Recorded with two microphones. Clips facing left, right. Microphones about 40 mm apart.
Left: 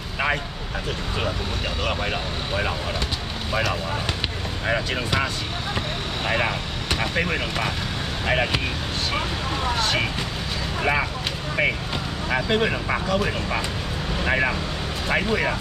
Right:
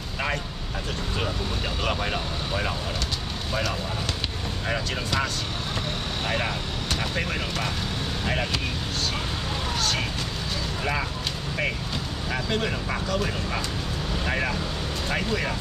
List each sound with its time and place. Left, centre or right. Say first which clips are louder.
1.9 s speech: left 1 dB; centre
4.6 s speech: left 5 dB; centre
9.7 s speech: left 4 dB; left
12.3 s speech: left 6 dB; left